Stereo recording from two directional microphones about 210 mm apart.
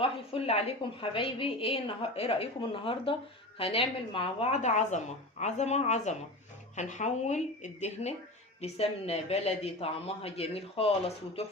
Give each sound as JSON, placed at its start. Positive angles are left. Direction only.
{"t": 0.0, "sound": "a woman's voice", "side_deg": 30}